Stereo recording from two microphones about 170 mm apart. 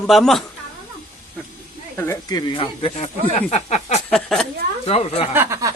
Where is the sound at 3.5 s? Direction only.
40° left (ahead or behind).